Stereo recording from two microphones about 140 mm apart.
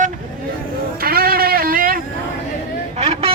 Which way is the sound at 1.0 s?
90° right.